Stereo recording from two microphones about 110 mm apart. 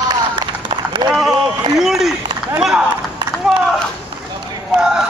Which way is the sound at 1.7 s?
5° right (ahead or behind).